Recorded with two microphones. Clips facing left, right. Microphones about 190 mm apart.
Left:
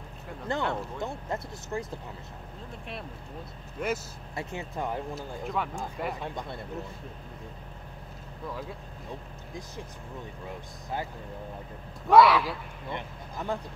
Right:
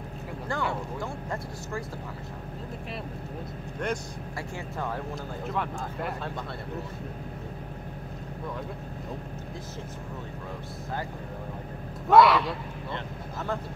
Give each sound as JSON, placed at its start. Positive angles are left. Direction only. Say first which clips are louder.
{"t": 0.5, "sound": "speech", "louder": "left 1 dB", "side_deg": 20}
{"t": 3.8, "sound": "speech", "louder": "even", "side_deg": 5}
{"t": 4.4, "sound": "speech", "louder": "left 2 dB", "side_deg": 20}
{"t": 5.1, "sound": "speech", "louder": "right 1 dB", "side_deg": 0}
{"t": 12.1, "sound": "speech", "louder": "even", "side_deg": 0}
{"t": 12.9, "sound": "speech", "louder": "even", "side_deg": 15}